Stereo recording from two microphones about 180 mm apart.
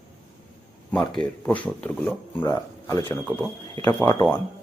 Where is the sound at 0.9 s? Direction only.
5° left (ahead or behind).